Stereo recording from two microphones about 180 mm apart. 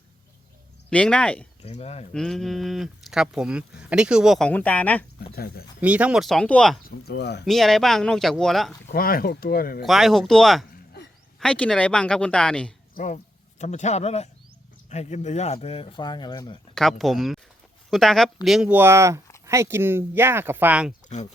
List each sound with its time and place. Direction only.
0.9 s speech: 5° left (ahead or behind)
1.6 s speech: 35° left (ahead or behind)
2.1 s speech: centre (ahead or behind)
5.2 s speech: 55° left (ahead or behind)
5.8 s speech: 5° right (ahead or behind)
6.8 s speech: 65° left (ahead or behind)
7.4 s speech: centre (ahead or behind)
8.9 s speech: 55° left (ahead or behind)
9.8 s speech: centre (ahead or behind)
12.9 s a sound: 45° left (ahead or behind)
13.6 s speech: 40° left (ahead or behind); by 16.6 s 25° left (ahead or behind)
16.7 s speech: centre (ahead or behind)